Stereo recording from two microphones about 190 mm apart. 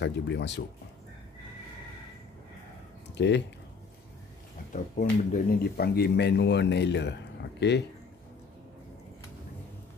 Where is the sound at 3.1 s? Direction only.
65° left (ahead or behind).